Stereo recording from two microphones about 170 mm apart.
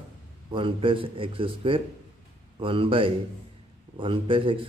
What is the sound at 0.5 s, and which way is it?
A man's voice, 30° right (ahead or behind).